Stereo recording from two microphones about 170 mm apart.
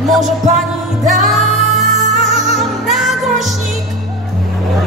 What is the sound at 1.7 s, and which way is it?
Music, 45° right (ahead or behind).